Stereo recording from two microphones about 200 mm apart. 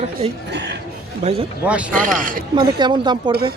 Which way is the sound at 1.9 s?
45° right (ahead or behind).